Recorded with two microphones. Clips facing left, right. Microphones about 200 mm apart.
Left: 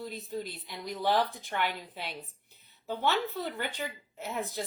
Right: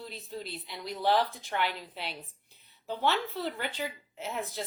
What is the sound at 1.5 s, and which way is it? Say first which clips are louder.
Speech: right 1 dB; 50° left (ahead or behind).